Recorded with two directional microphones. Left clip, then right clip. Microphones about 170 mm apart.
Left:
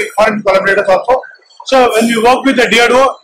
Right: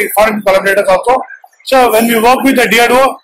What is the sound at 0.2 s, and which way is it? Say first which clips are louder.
Speech: even; 30° right (ahead or behind).